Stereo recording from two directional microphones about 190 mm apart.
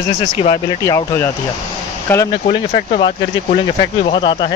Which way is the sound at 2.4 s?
35° left (ahead or behind).